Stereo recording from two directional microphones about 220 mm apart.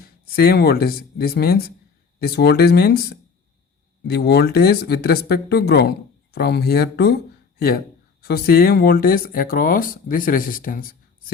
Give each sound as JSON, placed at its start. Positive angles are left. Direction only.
{"t": 0.0, "sound": "speech", "side_deg": 45}
{"t": 8.2, "sound": "speech", "side_deg": 45}